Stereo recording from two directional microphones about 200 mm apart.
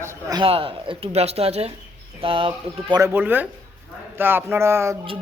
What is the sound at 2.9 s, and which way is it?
Speech, 15° right (ahead or behind).